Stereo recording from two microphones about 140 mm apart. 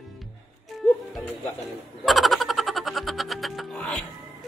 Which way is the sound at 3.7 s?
10° left (ahead or behind).